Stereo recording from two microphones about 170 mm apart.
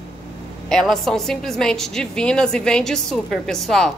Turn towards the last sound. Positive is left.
turn(degrees=5)  # may be behind; listen again after turning